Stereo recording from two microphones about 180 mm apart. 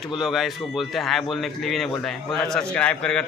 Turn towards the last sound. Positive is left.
turn(degrees=5)  # may be behind; listen again after turning